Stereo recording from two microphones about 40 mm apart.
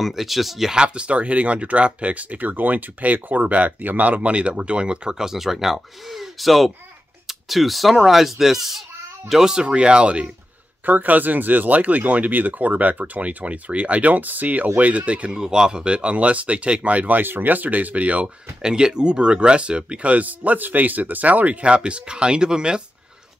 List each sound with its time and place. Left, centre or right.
0.0 s speech: centre
0.7 s speech: right
5.1 s speech: centre
9.7 s speech: right
10.9 s speech: right
15.3 s speech: centre; by 17.2 s right
17.2 s speech: right
18.2 s speech: centre